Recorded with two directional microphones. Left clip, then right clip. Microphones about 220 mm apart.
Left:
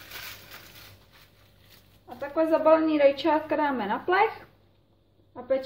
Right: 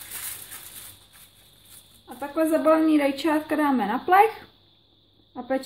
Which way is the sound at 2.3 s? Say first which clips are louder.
Even; 40° right (ahead or behind).